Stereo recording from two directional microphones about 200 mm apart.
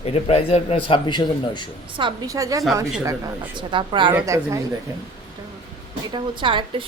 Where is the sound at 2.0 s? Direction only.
20° right (ahead or behind).